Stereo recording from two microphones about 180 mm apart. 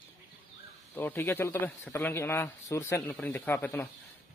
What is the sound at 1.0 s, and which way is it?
Speech, 10° left (ahead or behind).